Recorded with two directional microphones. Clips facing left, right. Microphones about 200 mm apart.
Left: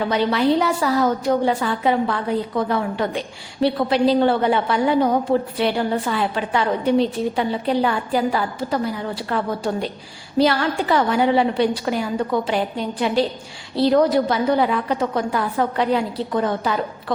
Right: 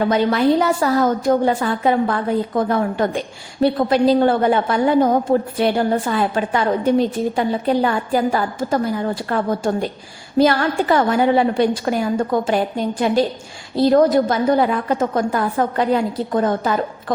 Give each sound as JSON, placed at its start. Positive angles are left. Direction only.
{"t": 0.1, "sound": "a woman's voice", "side_deg": -45}